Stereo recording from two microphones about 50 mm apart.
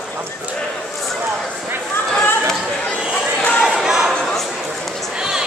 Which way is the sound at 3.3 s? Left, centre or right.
Left.